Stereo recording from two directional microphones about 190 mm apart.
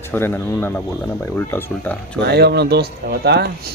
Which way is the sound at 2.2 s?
60° right (ahead or behind).